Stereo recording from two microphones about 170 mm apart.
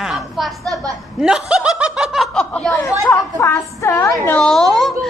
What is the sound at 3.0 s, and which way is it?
A woman's voice, 15° left (ahead or behind).